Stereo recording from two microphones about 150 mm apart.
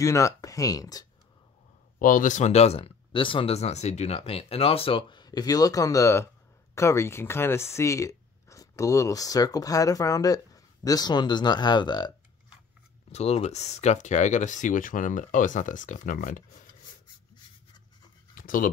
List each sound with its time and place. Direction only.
0.0 s speech: 20° left (ahead or behind)
2.0 s speech: 65° left (ahead or behind); by 12.1 s 30° left (ahead or behind)
13.1 s speech: 45° left (ahead or behind); by 16.6 s 60° left (ahead or behind)
18.3 s writing: 65° left (ahead or behind)